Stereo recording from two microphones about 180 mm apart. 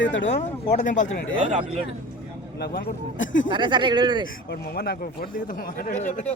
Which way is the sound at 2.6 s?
60° left (ahead or behind).